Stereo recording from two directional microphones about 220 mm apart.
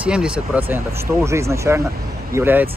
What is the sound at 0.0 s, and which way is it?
Speech, 5° right (ahead or behind).